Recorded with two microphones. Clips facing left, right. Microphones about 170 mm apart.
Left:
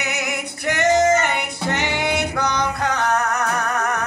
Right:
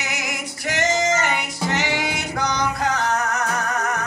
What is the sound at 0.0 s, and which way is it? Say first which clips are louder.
Music: left 3 dB; 60° left (ahead or behind).